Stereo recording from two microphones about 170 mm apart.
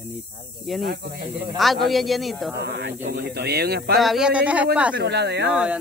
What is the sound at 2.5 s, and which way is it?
Speech, 90° right.